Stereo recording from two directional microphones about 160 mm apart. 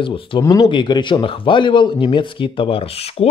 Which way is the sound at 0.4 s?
20° left (ahead or behind).